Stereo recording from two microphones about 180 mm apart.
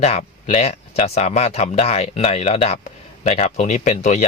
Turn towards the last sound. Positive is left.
turn(degrees=40)  # may be behind; listen again after turning